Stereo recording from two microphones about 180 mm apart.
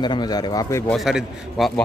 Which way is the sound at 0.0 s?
25° left (ahead or behind).